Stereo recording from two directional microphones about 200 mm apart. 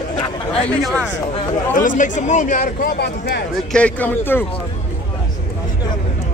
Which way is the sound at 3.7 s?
5° left (ahead or behind).